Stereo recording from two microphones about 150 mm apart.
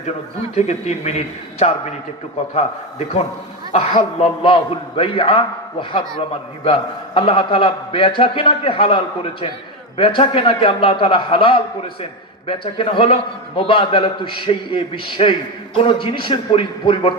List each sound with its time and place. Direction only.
0.5 s a man's voice: 50° left (ahead or behind)
6.7 s a man's voice: 35° left (ahead or behind)